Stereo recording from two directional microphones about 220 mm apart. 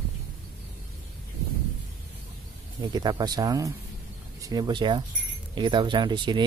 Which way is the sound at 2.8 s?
20° right (ahead or behind).